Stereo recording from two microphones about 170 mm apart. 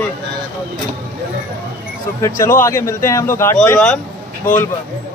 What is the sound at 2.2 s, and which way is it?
Speech, 20° left (ahead or behind).